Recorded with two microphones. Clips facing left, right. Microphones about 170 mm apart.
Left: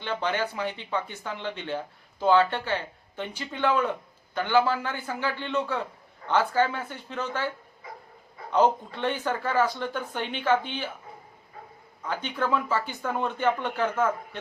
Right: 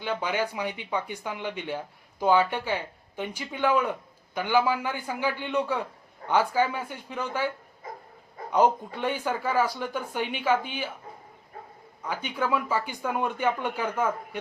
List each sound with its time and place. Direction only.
0.0 s speech: 10° right (ahead or behind)
7.8 s dog: 45° right (ahead or behind)
8.5 s speech: 10° right (ahead or behind)
12.0 s speech: 10° right (ahead or behind)